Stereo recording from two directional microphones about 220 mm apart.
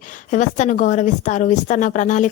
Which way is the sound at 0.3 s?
35° left (ahead or behind).